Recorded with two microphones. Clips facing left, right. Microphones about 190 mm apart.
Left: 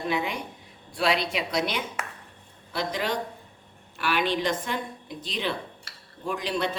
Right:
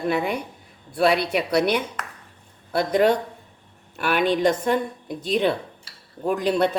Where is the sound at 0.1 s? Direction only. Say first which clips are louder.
Right 4 dB; 55° right (ahead or behind).